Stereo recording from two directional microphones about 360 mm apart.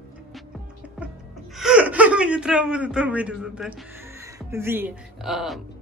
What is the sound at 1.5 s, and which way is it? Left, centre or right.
Speech, centre.